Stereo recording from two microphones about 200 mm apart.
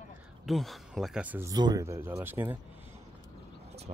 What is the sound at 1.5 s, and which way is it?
Speech, 20° right (ahead or behind).